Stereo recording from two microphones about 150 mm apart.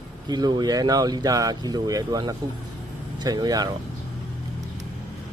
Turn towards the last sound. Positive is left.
turn(degrees=-25)  # may be behind; listen again after turning